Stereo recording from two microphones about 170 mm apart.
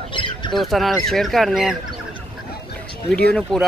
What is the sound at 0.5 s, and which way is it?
Speech, centre (ahead or behind).